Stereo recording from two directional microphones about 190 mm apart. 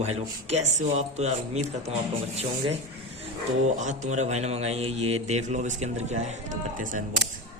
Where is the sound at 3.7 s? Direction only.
40° right (ahead or behind).